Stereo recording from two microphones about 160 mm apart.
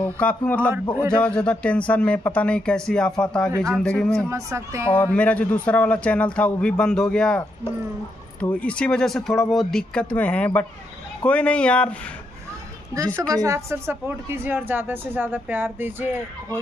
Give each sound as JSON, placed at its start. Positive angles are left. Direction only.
{"t": 0.0, "sound": "a man's voice", "side_deg": 10}
{"t": 4.3, "sound": "a woman's voice", "side_deg": -15}
{"t": 4.9, "sound": "a man's voice", "side_deg": 10}
{"t": 12.9, "sound": "a woman's voice", "side_deg": -20}